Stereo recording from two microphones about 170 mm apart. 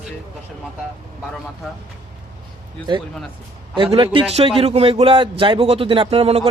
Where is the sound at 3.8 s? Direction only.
30° right (ahead or behind).